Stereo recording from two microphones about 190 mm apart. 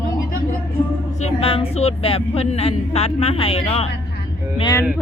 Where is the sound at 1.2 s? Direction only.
30° left (ahead or behind).